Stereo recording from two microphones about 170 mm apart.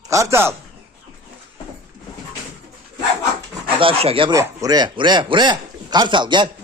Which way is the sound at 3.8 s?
35° right (ahead or behind).